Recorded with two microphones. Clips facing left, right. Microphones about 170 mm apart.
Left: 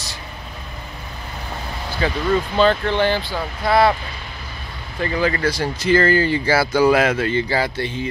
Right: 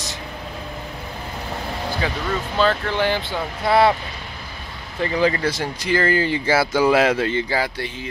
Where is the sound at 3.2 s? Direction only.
25° right (ahead or behind).